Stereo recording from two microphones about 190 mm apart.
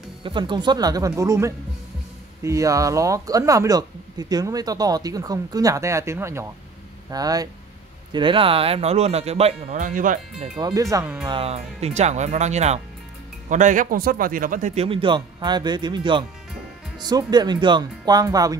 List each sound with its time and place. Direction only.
0.2 s speech: 25° right (ahead or behind); by 10.5 s 45° right (ahead or behind)
10.6 s speech: 15° right (ahead or behind)
11.2 s speech: 30° right (ahead or behind)